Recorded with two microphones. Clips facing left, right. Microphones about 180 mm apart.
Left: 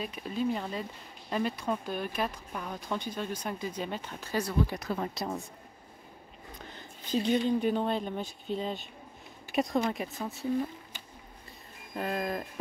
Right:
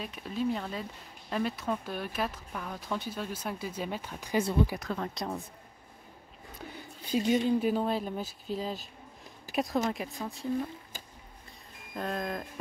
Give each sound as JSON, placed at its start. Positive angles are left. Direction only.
{"t": 0.0, "sound": "speech", "side_deg": 0}
{"t": 4.7, "sound": "speech", "side_deg": 10}
{"t": 6.6, "sound": "speech", "side_deg": -10}
{"t": 11.9, "sound": "speech", "side_deg": 5}